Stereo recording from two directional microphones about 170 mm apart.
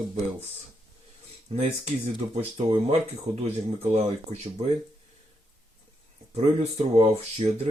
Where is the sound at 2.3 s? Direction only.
35° right (ahead or behind).